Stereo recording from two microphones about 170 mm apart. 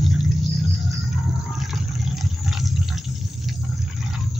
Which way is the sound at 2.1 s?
Centre (ahead or behind).